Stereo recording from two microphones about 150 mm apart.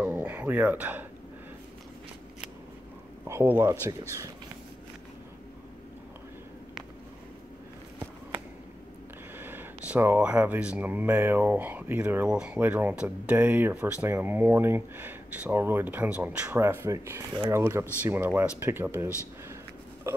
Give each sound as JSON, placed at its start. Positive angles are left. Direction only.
{"t": 0.0, "sound": "a sound", "side_deg": -15}
{"t": 3.3, "sound": "speech", "side_deg": -15}
{"t": 9.4, "sound": "speech", "side_deg": -15}